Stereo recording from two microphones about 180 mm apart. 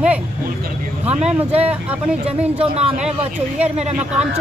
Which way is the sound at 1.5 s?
35° right (ahead or behind).